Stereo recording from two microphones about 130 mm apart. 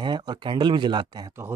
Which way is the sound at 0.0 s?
35° right (ahead or behind).